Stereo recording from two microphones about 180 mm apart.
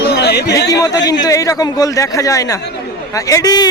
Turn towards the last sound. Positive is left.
turn(degrees=20)  # may be behind; listen again after turning